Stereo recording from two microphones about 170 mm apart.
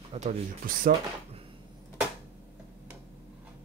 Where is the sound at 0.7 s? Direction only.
55° right (ahead or behind).